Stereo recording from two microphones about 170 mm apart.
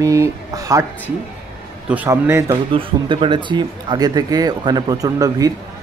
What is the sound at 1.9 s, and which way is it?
Speech, 10° right (ahead or behind).